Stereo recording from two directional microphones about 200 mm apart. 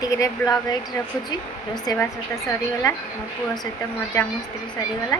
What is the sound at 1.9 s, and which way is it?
A woman's voice, 20° left (ahead or behind).